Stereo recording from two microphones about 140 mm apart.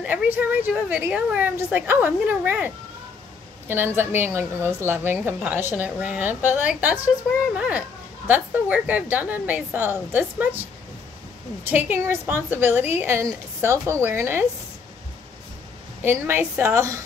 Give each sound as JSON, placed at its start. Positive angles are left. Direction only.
{"t": 0.0, "sound": "a woman's voice", "side_deg": -10}
{"t": 11.6, "sound": "a woman's voice", "side_deg": -15}
{"t": 16.0, "sound": "a woman's voice", "side_deg": -15}